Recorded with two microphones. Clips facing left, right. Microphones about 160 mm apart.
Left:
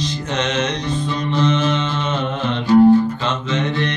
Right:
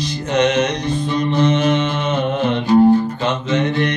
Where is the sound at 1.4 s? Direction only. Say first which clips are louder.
Right 2 dB; 50° right (ahead or behind).